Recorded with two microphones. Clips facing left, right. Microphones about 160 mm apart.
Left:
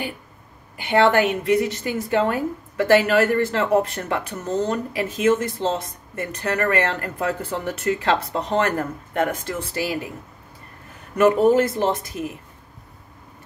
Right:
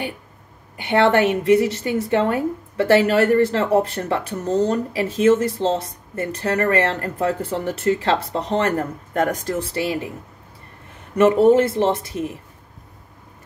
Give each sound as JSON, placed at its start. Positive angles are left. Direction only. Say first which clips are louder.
{"t": 0.7, "sound": "a woman's voice", "louder": "right 1 dB", "side_deg": -25}
{"t": 11.1, "sound": "speech", "louder": "right 2 dB", "side_deg": -30}